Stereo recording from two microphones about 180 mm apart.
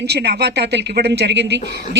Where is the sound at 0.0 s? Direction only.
70° right (ahead or behind).